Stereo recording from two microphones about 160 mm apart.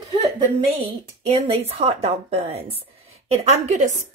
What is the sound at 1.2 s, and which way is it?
A woman's voice, 40° right (ahead or behind).